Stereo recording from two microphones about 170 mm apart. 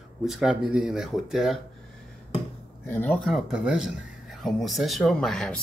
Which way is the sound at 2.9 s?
10° left (ahead or behind).